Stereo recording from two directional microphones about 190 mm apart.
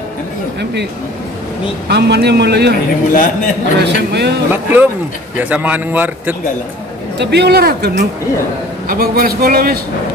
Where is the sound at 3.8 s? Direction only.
65° right (ahead or behind).